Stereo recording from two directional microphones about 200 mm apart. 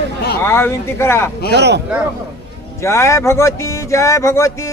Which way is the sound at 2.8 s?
15° left (ahead or behind).